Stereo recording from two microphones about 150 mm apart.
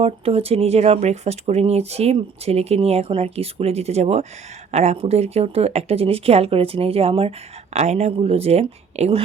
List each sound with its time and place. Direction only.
0.0 s speech: 40° right (ahead or behind)